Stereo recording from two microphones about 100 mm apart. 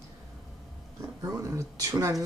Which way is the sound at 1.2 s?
35° right (ahead or behind).